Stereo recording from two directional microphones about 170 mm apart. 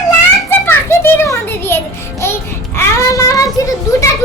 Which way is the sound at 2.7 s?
20° left (ahead or behind).